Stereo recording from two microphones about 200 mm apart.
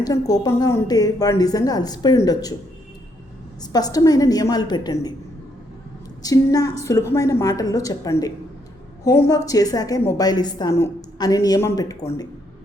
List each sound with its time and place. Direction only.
0.0 s a woman's voice: 20° left (ahead or behind)
3.6 s a woman's voice: 20° left (ahead or behind)
6.2 s a woman's voice: 20° left (ahead or behind)